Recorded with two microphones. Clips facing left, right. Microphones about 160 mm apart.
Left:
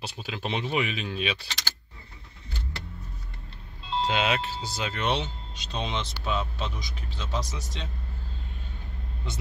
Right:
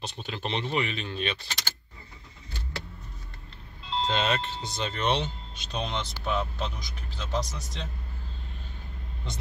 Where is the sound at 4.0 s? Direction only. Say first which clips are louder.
Left 1 dB; 5° left (ahead or behind).